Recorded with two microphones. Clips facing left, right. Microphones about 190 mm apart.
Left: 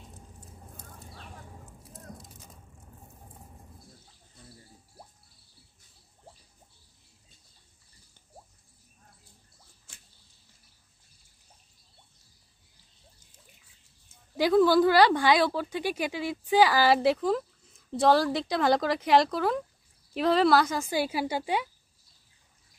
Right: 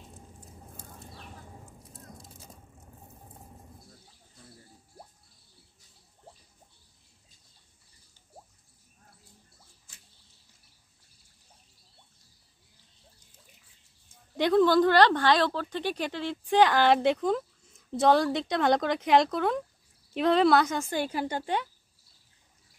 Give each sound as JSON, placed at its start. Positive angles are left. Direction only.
{"t": 14.3, "sound": "speech", "side_deg": 5}